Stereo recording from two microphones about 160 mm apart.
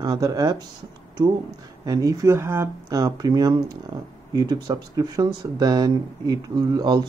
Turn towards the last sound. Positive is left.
turn(degrees=-25)  # may be behind; listen again after turning